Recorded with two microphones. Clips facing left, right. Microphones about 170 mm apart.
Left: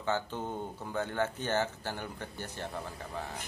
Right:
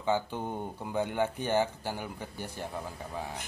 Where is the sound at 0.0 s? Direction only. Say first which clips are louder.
Right 3 dB; 15° right (ahead or behind).